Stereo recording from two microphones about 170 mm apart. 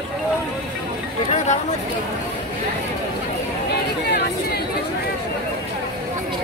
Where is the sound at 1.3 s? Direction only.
45° left (ahead or behind).